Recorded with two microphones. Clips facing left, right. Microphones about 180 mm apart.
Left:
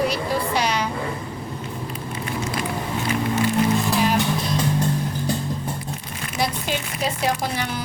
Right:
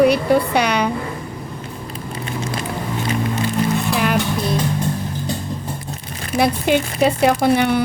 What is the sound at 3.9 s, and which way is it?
Music, 65° right (ahead or behind).